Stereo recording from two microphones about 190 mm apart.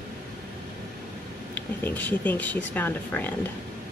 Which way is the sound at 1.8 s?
10° left (ahead or behind).